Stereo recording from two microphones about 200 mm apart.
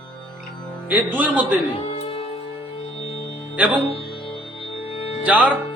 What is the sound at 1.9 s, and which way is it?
Music, 30° left (ahead or behind).